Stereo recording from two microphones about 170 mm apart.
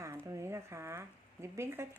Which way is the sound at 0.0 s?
15° right (ahead or behind).